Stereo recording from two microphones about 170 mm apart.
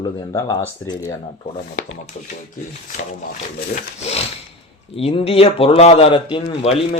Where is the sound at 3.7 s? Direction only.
40° left (ahead or behind).